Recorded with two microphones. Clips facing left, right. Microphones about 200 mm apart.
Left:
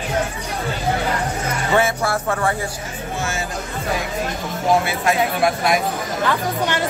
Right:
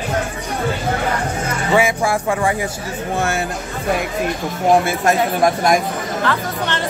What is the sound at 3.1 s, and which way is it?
Speech, 60° right (ahead or behind).